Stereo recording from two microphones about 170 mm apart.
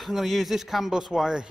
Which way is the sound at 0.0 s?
Centre (ahead or behind).